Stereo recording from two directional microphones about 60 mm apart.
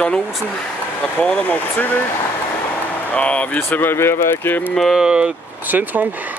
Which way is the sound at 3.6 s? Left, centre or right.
Left.